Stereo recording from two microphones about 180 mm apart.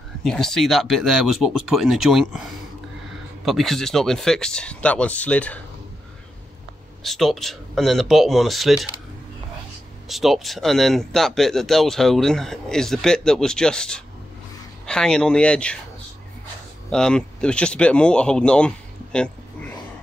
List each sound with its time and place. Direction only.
0.2 s speech: centre (ahead or behind)
7.0 s speech: centre (ahead or behind)
10.0 s speech: centre (ahead or behind)
16.9 s speech: 5° left (ahead or behind)